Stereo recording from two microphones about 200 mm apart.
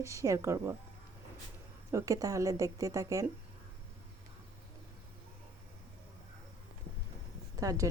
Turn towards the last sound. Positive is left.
turn(degrees=-15)  # may be behind; listen again after turning